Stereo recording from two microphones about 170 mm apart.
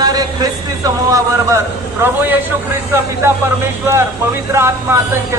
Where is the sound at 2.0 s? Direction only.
10° right (ahead or behind).